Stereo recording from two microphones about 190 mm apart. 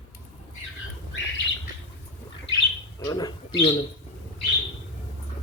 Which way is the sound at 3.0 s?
20° left (ahead or behind).